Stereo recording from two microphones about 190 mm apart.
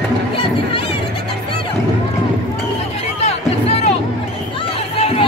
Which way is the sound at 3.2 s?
35° left (ahead or behind).